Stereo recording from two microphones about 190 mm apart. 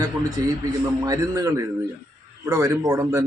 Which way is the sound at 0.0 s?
20° right (ahead or behind).